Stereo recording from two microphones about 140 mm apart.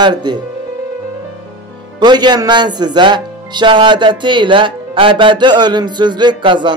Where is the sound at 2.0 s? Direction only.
30° right (ahead or behind).